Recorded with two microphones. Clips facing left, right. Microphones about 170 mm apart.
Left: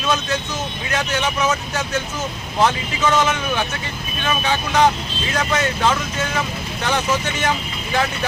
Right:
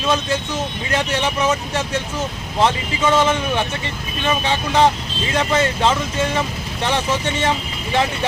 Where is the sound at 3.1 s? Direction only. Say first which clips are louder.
Right 3 dB; 30° right (ahead or behind).